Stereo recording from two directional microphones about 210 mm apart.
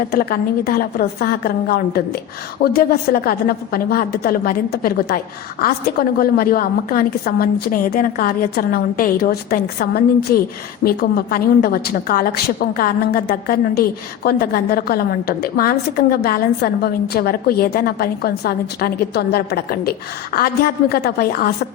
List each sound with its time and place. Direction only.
0.1 s a woman's voice: 45° left (ahead or behind)